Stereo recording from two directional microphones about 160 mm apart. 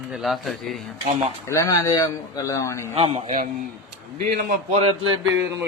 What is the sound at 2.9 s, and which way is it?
Speech, 40° right (ahead or behind).